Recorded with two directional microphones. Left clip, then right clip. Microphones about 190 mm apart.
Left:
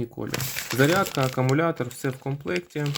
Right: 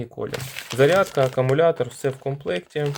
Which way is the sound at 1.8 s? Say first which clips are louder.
Right 5 dB; 40° right (ahead or behind).